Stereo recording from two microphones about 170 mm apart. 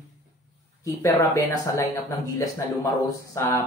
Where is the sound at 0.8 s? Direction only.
15° left (ahead or behind).